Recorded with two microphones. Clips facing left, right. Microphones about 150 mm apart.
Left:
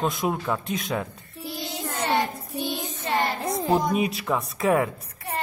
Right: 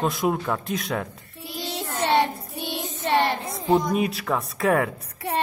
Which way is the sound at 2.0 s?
70° right (ahead or behind).